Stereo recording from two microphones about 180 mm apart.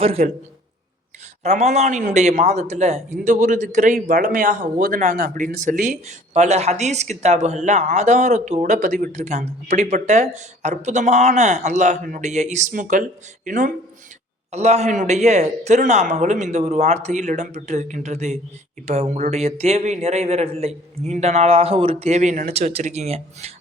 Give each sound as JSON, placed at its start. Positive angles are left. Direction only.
{"t": 0.0, "sound": "speech", "side_deg": -35}
{"t": 1.5, "sound": "speech", "side_deg": -40}